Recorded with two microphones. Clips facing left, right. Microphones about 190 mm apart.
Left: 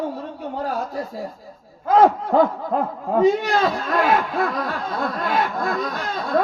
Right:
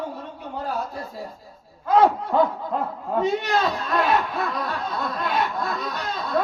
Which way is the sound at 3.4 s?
45° left (ahead or behind).